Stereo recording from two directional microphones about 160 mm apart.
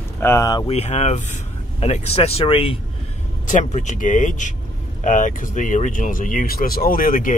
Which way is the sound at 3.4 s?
50° left (ahead or behind).